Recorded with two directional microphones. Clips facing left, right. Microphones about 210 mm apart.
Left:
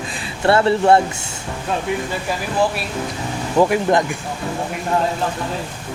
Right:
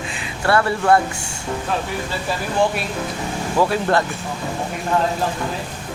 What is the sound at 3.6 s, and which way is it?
Speech, 15° left (ahead or behind).